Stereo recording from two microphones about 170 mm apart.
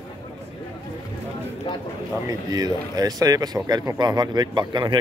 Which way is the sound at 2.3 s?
20° right (ahead or behind).